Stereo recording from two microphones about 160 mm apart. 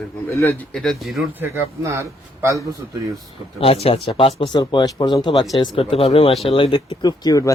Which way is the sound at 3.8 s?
35° left (ahead or behind).